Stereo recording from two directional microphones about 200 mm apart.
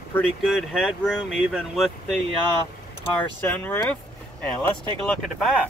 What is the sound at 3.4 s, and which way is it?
Speech, 10° left (ahead or behind).